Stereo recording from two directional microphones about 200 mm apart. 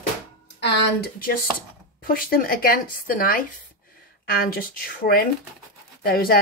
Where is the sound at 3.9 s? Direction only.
50° left (ahead or behind).